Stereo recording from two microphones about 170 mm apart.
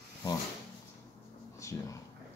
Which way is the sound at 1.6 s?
20° left (ahead or behind).